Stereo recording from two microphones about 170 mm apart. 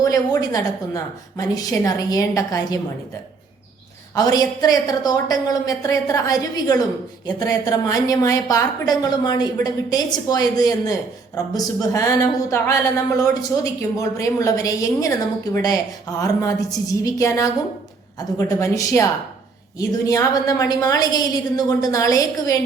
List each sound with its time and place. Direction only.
0.0 s a woman's voice: 20° left (ahead or behind)
4.1 s a woman's voice: 20° left (ahead or behind)